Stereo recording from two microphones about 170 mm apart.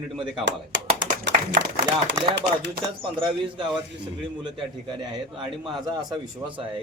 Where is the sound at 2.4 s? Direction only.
90° right.